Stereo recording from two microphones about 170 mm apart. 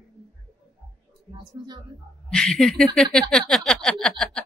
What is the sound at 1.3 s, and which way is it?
Speech, 25° right (ahead or behind).